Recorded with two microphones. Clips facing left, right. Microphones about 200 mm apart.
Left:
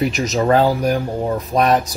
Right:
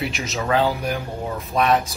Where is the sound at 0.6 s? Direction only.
45° left (ahead or behind).